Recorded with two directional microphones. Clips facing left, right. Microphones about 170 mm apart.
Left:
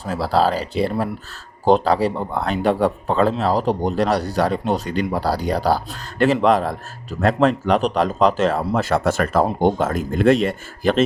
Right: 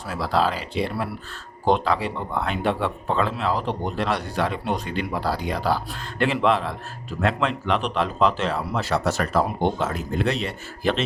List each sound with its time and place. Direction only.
0.0 s speech: 35° left (ahead or behind)